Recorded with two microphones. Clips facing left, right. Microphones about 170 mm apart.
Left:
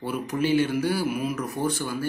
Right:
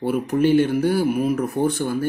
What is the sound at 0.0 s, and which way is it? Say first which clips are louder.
Speech: right 7 dB; 55° right (ahead or behind).